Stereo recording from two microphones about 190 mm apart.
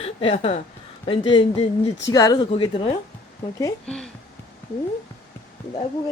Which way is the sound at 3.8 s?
5° left (ahead or behind).